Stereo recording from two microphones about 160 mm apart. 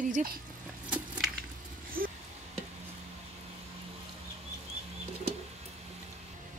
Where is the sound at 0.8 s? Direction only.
10° right (ahead or behind).